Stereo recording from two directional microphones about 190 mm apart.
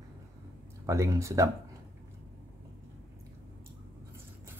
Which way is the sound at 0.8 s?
15° right (ahead or behind).